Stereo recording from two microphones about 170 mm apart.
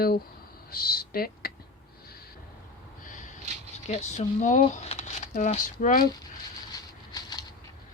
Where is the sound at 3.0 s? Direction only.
50° left (ahead or behind).